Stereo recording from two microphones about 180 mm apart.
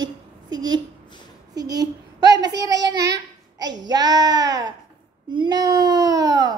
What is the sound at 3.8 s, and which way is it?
A child's voice, 20° right (ahead or behind).